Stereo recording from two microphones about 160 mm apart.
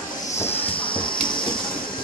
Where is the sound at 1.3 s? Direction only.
30° left (ahead or behind).